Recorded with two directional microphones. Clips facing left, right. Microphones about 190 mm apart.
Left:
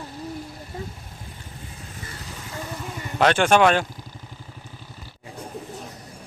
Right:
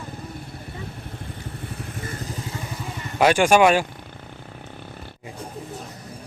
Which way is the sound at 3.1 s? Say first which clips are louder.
Right 2 dB; 10° right (ahead or behind).